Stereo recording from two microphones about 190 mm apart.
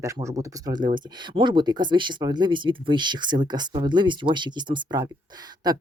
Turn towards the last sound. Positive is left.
turn(degrees=-20)  # may be behind; listen again after turning